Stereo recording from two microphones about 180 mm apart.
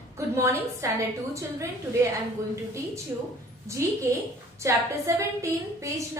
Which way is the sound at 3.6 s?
15° right (ahead or behind).